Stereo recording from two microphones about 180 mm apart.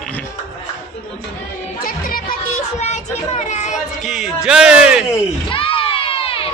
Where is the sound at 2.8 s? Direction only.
40° left (ahead or behind).